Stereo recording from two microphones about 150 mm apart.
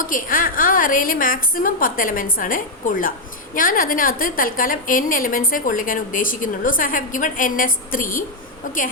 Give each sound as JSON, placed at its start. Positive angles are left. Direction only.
{"t": 0.0, "sound": "a woman's voice", "side_deg": 65}